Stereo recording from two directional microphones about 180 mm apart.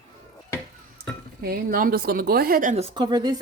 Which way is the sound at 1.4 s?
55° right (ahead or behind).